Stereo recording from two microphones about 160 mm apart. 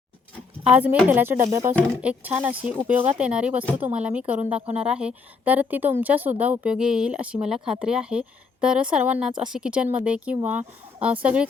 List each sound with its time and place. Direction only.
0.6 s speech: 10° right (ahead or behind)
2.0 s speech: 10° right (ahead or behind)